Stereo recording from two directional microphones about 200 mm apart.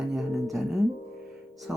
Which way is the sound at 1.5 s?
Centre (ahead or behind).